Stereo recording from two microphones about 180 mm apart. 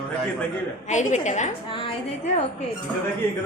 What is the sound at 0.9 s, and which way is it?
Speech, 45° left (ahead or behind).